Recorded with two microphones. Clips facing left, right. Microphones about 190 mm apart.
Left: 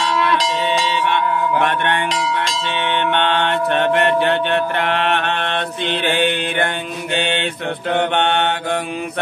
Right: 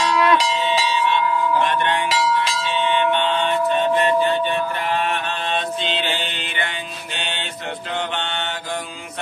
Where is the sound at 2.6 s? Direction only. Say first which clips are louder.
Even; 65° left (ahead or behind).